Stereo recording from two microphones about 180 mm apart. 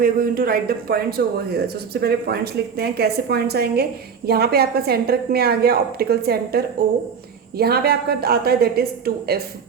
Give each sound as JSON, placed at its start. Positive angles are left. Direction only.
{"t": 0.0, "sound": "speech", "side_deg": -55}